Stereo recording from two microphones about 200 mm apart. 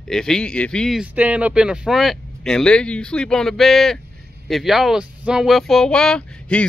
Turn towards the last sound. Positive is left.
turn(degrees=5)  # may be behind; listen again after turning